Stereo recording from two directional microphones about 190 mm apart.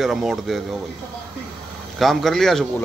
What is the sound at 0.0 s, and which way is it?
Speech, centre (ahead or behind).